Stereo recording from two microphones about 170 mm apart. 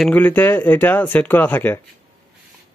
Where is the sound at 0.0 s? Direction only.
10° left (ahead or behind).